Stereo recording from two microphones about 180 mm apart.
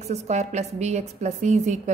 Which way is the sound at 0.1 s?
40° right (ahead or behind).